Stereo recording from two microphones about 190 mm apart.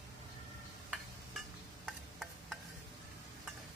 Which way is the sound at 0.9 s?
Centre (ahead or behind).